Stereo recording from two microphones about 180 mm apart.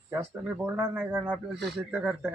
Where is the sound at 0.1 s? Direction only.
10° right (ahead or behind).